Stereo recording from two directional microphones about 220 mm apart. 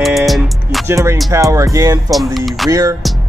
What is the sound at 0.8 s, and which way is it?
Speech, 10° right (ahead or behind).